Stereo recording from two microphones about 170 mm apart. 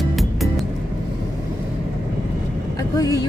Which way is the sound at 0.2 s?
Centre (ahead or behind).